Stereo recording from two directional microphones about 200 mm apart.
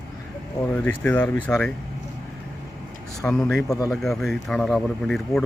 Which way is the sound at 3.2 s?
5° left (ahead or behind).